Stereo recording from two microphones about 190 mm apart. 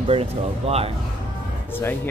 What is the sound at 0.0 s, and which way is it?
Speech, 30° right (ahead or behind).